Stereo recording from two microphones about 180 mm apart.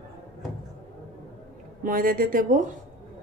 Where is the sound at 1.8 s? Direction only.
50° right (ahead or behind).